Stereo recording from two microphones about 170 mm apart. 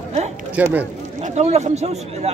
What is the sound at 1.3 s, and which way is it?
Speech, 40° right (ahead or behind).